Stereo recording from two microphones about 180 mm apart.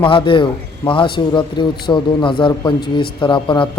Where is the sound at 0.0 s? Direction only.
30° left (ahead or behind).